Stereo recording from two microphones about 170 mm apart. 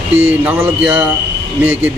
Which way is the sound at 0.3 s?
15° right (ahead or behind).